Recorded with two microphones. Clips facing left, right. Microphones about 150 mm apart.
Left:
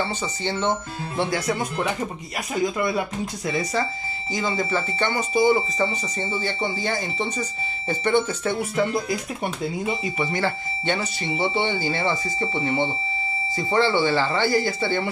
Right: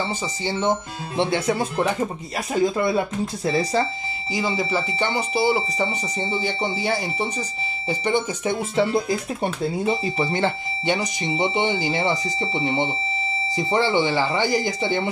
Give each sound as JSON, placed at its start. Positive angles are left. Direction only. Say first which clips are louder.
{"t": 0.0, "sound": "speech", "louder": "even", "side_deg": -10}
{"t": 4.3, "sound": "speech", "louder": "right 1 dB", "side_deg": -10}
{"t": 8.7, "sound": "speech", "louder": "right 3 dB", "side_deg": -30}
{"t": 10.9, "sound": "speech", "louder": "right 2 dB", "side_deg": -15}